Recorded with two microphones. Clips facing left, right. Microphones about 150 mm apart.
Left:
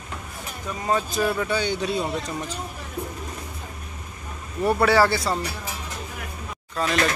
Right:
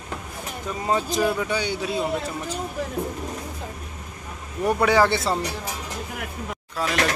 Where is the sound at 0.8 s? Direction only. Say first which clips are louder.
Right 1 dB; 20° right (ahead or behind).